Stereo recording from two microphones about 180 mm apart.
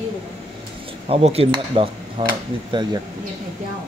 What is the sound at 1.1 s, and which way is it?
Speech, 35° right (ahead or behind).